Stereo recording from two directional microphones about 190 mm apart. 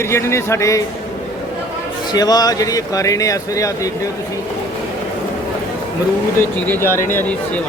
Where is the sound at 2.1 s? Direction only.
20° left (ahead or behind).